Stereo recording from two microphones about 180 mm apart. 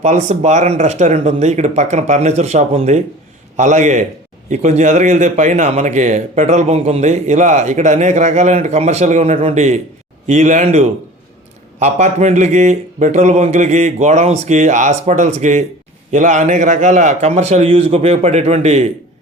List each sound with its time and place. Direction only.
0.0 s a man's voice: 40° right (ahead or behind)